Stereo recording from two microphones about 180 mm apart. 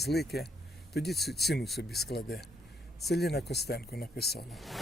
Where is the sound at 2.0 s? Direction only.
65° left (ahead or behind).